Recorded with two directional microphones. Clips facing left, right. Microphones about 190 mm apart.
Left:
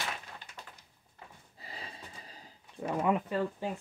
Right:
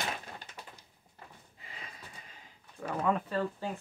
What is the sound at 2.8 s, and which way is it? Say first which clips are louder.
Speech: left 1 dB; 15° left (ahead or behind).